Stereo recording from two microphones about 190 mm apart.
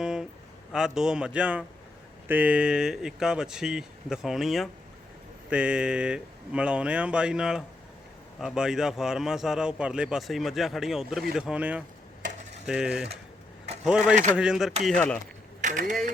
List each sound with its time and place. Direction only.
0.0 s a sound: 5° right (ahead or behind)
0.7 s a man's voice: 5° right (ahead or behind)
15.6 s speech: 45° right (ahead or behind)